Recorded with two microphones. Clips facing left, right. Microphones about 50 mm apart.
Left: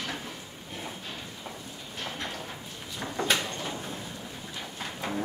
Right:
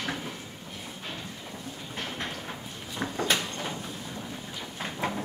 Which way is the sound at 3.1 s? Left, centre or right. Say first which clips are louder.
Left 1 dB; centre.